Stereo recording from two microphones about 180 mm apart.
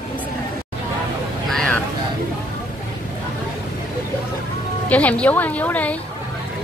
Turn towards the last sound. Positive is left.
turn(degrees=10)  # may be behind; listen again after turning